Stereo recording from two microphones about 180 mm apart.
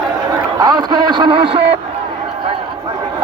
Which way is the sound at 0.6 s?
20° right (ahead or behind).